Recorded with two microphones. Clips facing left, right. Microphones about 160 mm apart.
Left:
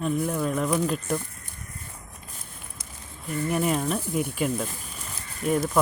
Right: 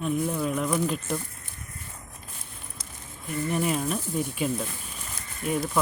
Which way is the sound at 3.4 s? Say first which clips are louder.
Left 2 dB; 5° left (ahead or behind).